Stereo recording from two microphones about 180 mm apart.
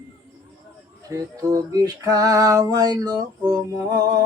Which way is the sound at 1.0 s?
20° right (ahead or behind).